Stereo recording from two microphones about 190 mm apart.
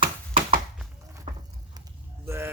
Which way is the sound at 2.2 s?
15° right (ahead or behind).